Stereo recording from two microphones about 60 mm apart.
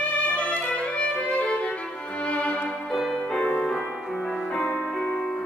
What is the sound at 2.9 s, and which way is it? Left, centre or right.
Keyboard, centre.